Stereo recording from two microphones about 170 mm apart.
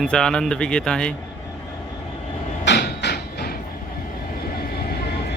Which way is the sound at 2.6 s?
80° left.